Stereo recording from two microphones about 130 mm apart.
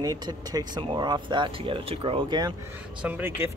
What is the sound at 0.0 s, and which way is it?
Speech, 30° right (ahead or behind).